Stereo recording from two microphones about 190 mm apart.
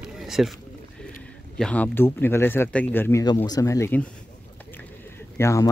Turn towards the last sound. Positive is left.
turn(degrees=15)  # may be behind; listen again after turning